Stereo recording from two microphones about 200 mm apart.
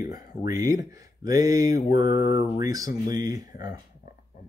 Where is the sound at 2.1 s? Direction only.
45° left (ahead or behind).